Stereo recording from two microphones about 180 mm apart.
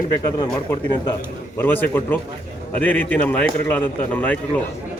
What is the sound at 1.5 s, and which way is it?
A man's voice, 10° left (ahead or behind).